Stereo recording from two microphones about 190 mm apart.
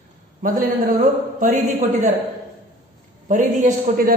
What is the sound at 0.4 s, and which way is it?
A man's voice, 45° right (ahead or behind).